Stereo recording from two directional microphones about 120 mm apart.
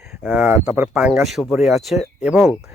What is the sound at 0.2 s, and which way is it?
Speech, 5° right (ahead or behind).